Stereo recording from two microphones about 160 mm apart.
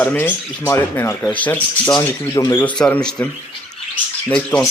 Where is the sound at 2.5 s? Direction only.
10° left (ahead or behind).